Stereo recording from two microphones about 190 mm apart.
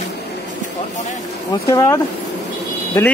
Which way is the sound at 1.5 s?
15° left (ahead or behind).